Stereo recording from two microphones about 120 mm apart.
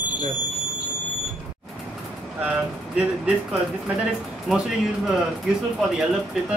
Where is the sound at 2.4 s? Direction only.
10° right (ahead or behind).